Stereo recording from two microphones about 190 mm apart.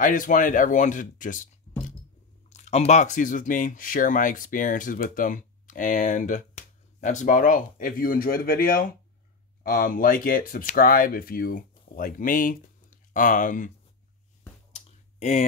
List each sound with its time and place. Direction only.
0.0 s speech: 45° left (ahead or behind)
1.7 s music: 35° left (ahead or behind)
2.5 s speech: 35° left (ahead or behind)
14.7 s clicking: 40° left (ahead or behind)